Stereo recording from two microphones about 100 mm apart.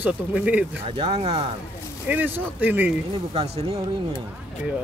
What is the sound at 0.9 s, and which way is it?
Speech, 80° right.